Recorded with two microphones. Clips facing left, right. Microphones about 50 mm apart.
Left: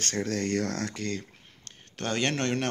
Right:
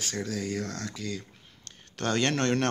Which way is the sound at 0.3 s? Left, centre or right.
Left.